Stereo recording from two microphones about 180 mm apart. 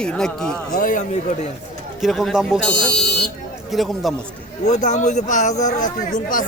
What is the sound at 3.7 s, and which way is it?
Speech, centre (ahead or behind).